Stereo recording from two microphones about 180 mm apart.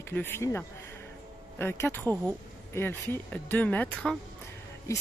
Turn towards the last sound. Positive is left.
turn(degrees=15)  # may be behind; listen again after turning